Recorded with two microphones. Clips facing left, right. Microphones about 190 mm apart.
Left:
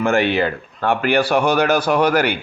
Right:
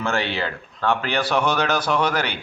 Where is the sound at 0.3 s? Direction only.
15° left (ahead or behind).